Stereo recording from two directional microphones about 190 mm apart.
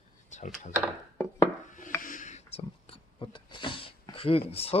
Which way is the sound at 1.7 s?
45° left (ahead or behind).